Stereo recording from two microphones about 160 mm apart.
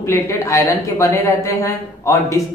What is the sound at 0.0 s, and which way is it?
A woman's voice, 15° left (ahead or behind).